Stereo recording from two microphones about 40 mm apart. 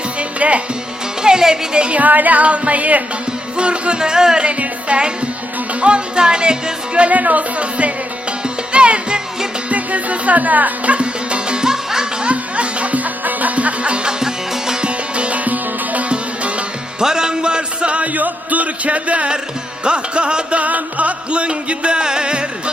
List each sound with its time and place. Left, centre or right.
0.2 s music: right
1.2 s music: centre
1.8 s music: right
3.6 s music: right
4.4 s music: right
7.0 s music: right
9.6 s music: right; by 12.0 s centre
12.2 s music: right; by 14.8 s centre
14.8 s music: right
15.4 s sitar: right
16.0 s music: right
17.0 s music: centre; by 19.3 s right
19.8 s music: right